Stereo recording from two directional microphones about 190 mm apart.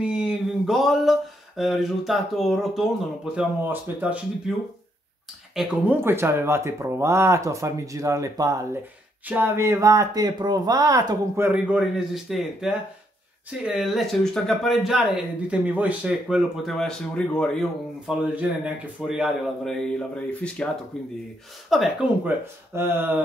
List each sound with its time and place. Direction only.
0.0 s a sound: 5° right (ahead or behind)
1.6 s speech: centre (ahead or behind)
5.6 s speech: 10° right (ahead or behind)
11.7 s speech: centre (ahead or behind)
22.8 s speech: 10° right (ahead or behind)